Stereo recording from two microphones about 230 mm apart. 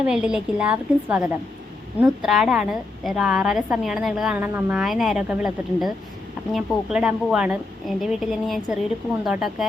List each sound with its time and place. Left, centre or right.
0.0 s a woman's voice: centre